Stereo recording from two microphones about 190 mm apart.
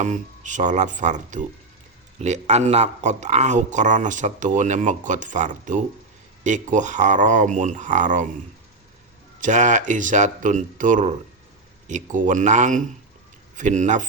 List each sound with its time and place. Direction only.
0.0 s speech: 40° right (ahead or behind)
9.4 s speech: 40° right (ahead or behind)